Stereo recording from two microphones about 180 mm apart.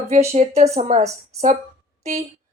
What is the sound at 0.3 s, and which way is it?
Speech, 40° right (ahead or behind).